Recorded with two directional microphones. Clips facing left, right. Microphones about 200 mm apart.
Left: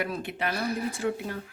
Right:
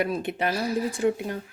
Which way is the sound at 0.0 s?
20° right (ahead or behind).